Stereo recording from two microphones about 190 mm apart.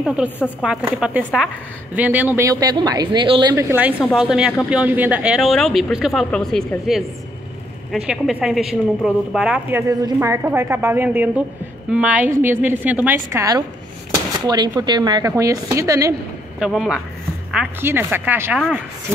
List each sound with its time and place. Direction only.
0.0 s a woman's voice: 5° right (ahead or behind); by 3.5 s 25° right (ahead or behind)
3.5 s a woman's voice: 10° right (ahead or behind)
16.5 s a woman's voice: centre (ahead or behind)